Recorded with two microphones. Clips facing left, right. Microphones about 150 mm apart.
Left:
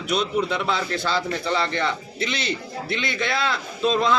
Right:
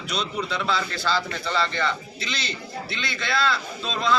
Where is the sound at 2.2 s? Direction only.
60° left (ahead or behind).